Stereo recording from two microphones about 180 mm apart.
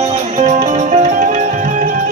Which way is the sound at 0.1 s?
40° right (ahead or behind).